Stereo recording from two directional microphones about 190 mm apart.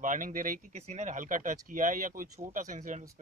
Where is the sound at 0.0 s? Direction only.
45° right (ahead or behind).